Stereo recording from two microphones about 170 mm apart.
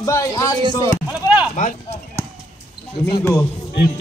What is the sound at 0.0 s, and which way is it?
Speech, 20° left (ahead or behind).